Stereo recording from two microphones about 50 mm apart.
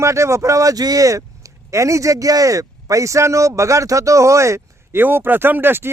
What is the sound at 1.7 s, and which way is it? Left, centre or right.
Speech, right.